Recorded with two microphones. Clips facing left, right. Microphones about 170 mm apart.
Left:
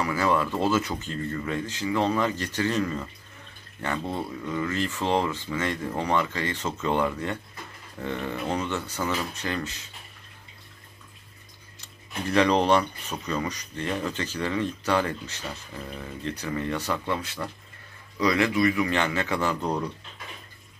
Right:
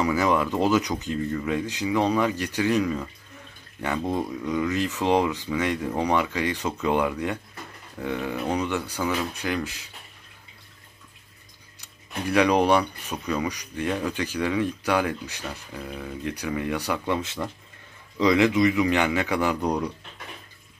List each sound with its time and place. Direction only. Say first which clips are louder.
0.0 s speech: right 2 dB; 15° right (ahead or behind)
11.8 s speech: right 2 dB; 10° right (ahead or behind)